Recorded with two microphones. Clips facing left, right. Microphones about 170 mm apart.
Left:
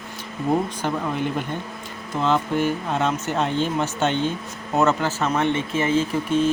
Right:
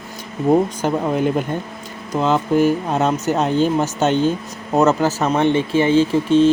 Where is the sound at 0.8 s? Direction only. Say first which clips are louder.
Right 6 dB; 40° right (ahead or behind).